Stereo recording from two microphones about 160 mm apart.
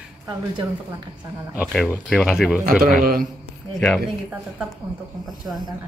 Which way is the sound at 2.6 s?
65° right (ahead or behind).